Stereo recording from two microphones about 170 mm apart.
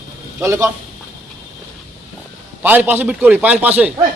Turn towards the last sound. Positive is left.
turn(degrees=-10)  # may be behind; listen again after turning